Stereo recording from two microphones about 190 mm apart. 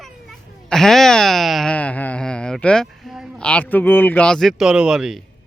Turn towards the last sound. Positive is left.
turn(degrees=0)  # may be behind; listen again after turning